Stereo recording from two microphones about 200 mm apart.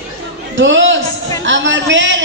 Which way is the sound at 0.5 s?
65° right (ahead or behind).